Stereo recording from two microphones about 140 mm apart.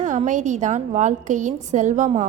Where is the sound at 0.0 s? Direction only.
60° right (ahead or behind).